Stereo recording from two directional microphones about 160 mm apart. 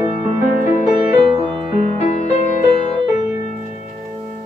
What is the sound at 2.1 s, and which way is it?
Music, 45° left (ahead or behind).